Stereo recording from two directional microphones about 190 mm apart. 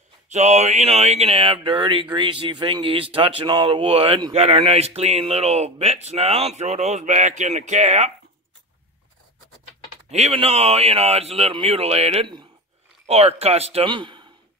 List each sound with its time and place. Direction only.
0.3 s speech: 35° right (ahead or behind)
10.1 s speech: 35° right (ahead or behind)